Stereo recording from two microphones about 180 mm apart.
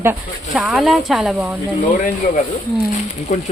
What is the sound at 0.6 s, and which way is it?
Speech, centre (ahead or behind).